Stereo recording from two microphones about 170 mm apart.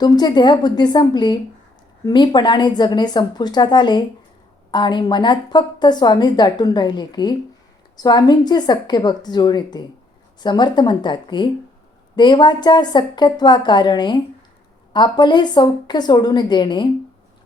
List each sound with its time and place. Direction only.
0.0 s speech: 25° left (ahead or behind)